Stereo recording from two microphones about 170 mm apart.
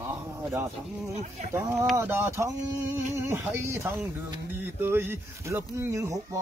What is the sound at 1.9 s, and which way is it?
Speech, 15° right (ahead or behind).